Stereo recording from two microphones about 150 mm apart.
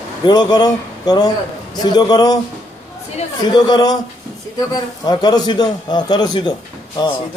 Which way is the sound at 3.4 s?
30° left (ahead or behind).